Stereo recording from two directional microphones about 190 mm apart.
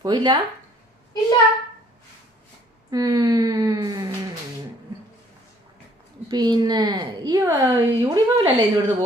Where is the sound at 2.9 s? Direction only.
20° right (ahead or behind).